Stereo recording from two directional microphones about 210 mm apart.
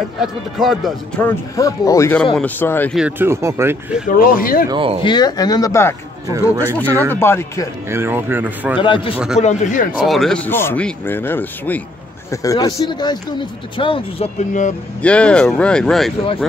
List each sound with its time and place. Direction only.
0.2 s speech: centre (ahead or behind)
1.6 s speech: 15° left (ahead or behind)
3.0 s speech: 10° right (ahead or behind)
4.1 s speech: 40° left (ahead or behind)
4.6 s speech: 25° right (ahead or behind)
5.0 s speech: 20° left (ahead or behind)
6.2 s speech: 15° right (ahead or behind)
7.1 s speech: 10° left (ahead or behind)
7.9 s speech: 10° right (ahead or behind)
8.7 s speech: 25° left (ahead or behind)
9.1 s speech: 5° right (ahead or behind)
9.4 s speech: 35° left (ahead or behind)
9.9 s speech: centre (ahead or behind); by 14.7 s 35° left (ahead or behind)
15.0 s speech: 5° left (ahead or behind)